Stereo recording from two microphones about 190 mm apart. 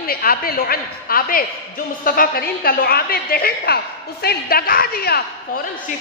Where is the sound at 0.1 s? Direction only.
50° left (ahead or behind).